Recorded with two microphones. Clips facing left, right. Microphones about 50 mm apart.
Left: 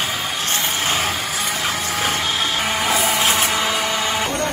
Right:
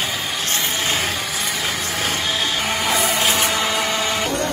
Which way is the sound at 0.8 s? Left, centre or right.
Left.